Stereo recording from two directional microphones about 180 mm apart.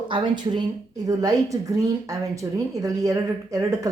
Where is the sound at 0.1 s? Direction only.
25° right (ahead or behind).